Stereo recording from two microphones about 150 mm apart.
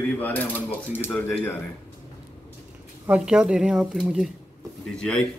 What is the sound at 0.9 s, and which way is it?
Speech, 15° left (ahead or behind).